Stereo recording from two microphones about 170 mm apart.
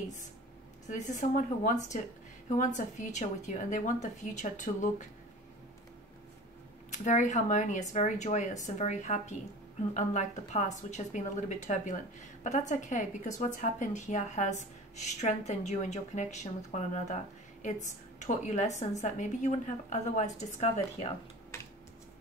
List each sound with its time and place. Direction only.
0.8 s a woman's voice: 45° left (ahead or behind)
6.9 s a woman's voice: 45° left (ahead or behind)